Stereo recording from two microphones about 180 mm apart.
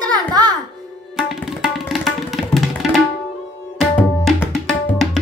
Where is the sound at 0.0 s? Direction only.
20° right (ahead or behind).